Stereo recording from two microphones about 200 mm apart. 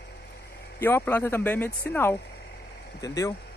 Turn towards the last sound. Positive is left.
turn(degrees=15)  # may be behind; listen again after turning